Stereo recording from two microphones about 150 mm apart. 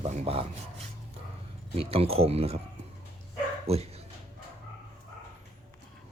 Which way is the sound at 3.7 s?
45° right (ahead or behind).